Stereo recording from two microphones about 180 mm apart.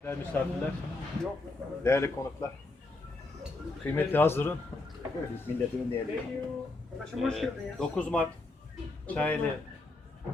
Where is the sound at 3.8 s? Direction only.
10° left (ahead or behind).